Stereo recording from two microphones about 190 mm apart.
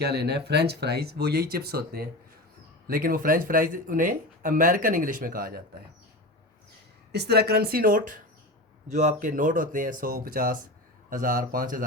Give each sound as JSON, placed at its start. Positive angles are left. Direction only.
{"t": 0.0, "sound": "speech", "side_deg": -60}
{"t": 7.1, "sound": "speech", "side_deg": -60}